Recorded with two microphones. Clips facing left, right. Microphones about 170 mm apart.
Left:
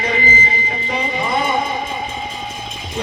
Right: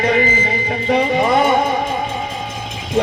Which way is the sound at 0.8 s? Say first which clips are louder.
Right 8 dB; 55° right (ahead or behind).